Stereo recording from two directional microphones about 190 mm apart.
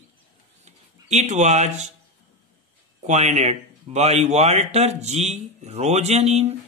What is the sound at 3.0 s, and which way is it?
A man's voice, 35° right (ahead or behind).